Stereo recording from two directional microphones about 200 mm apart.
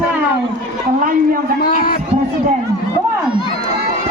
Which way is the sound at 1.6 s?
45° left (ahead or behind).